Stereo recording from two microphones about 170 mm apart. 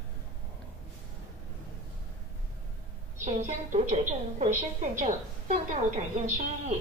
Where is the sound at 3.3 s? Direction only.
40° right (ahead or behind).